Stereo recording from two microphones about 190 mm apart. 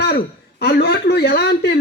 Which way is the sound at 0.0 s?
60° left (ahead or behind).